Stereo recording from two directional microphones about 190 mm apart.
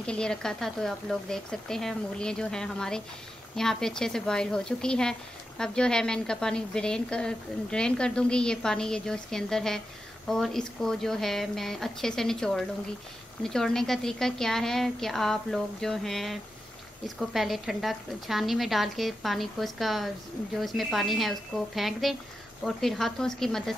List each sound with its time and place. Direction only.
0.0 s a woman's voice: 5° left (ahead or behind)